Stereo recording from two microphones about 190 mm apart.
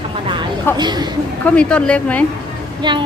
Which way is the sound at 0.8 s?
20° right (ahead or behind).